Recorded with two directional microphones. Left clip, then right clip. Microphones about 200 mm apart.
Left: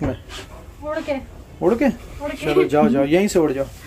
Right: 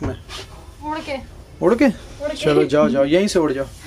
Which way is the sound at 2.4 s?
10° right (ahead or behind).